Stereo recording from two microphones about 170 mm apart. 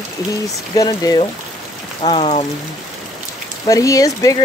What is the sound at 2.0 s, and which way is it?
Speech, 35° left (ahead or behind).